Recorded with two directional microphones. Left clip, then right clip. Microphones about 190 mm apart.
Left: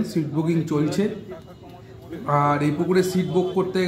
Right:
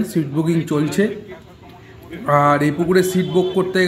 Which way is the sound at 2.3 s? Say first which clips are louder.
Right 6 dB; 20° right (ahead or behind).